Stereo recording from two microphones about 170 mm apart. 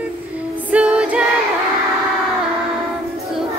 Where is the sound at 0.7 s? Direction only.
5° right (ahead or behind).